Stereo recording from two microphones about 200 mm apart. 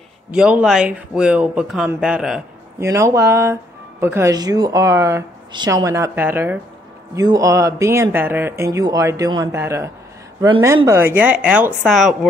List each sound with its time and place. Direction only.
0.3 s speech: 5° right (ahead or behind)
2.8 s speech: 15° right (ahead or behind)